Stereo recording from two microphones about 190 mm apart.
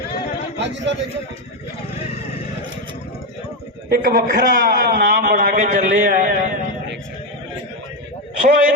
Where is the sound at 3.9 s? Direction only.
55° right (ahead or behind).